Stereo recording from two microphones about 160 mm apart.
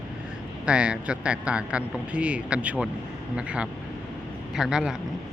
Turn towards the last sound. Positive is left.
turn(degrees=-5)  # may be behind; listen again after turning